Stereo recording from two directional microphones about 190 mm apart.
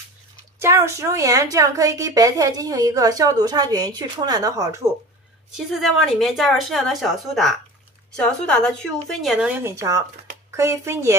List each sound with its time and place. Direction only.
0.6 s speech: 15° right (ahead or behind)
5.5 s a woman's voice: centre (ahead or behind)